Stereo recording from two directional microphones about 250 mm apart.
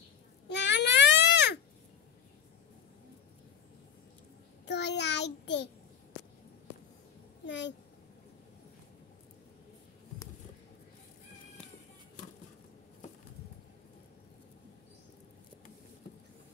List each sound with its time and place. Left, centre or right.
0.5 s baby cry: left
4.6 s child singing: left
7.4 s a sound: left